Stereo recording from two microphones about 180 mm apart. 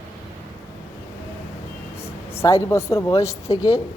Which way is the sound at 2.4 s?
15° left (ahead or behind).